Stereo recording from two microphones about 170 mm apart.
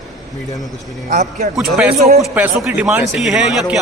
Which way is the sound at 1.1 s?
45° right (ahead or behind).